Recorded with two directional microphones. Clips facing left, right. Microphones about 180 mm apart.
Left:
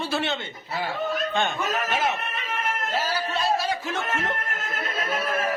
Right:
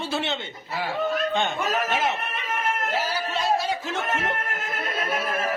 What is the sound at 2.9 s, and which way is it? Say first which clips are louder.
Speech: even; 20° right (ahead or behind).